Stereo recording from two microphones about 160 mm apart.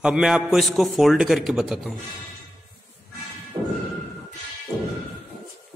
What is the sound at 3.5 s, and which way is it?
Thump, 30° right (ahead or behind).